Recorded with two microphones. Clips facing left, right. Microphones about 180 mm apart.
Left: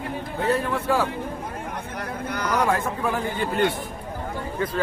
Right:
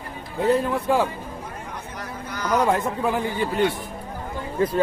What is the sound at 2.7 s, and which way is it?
Speech, 20° right (ahead or behind).